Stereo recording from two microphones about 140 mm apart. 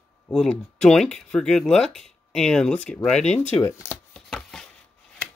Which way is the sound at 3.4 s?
20° left (ahead or behind).